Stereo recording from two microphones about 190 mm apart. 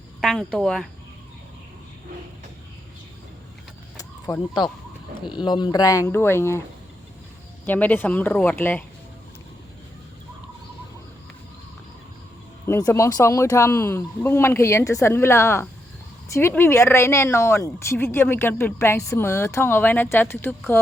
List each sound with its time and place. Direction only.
0.2 s speech: 5° left (ahead or behind)
3.9 s a sound: 20° left (ahead or behind)
5.4 s speech: 25° left (ahead or behind)
7.6 s speech: 10° left (ahead or behind)
12.6 s speech: 15° left (ahead or behind)